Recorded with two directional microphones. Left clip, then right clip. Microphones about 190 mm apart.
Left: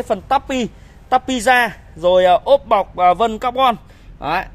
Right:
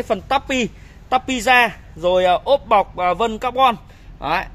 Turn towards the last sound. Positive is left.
turn(degrees=10)  # may be behind; listen again after turning